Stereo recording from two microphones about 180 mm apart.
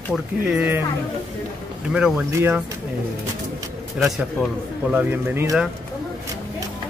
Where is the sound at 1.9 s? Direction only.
5° right (ahead or behind).